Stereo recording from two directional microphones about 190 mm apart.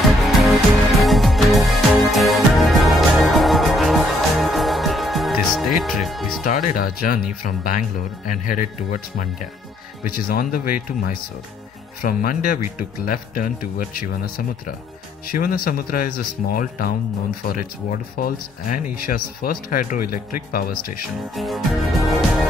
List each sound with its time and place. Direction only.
0.9 s music: centre (ahead or behind)
6.4 s speech: 45° left (ahead or behind)
15.3 s speech: 50° left (ahead or behind)
18.1 s speech: 50° left (ahead or behind)
21.4 s music: centre (ahead or behind)